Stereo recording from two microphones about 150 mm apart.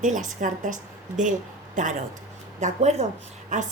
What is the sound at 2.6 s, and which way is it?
A woman's voice, 50° right (ahead or behind).